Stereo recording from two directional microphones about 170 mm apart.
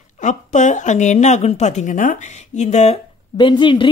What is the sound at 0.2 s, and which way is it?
Speech, 45° left (ahead or behind).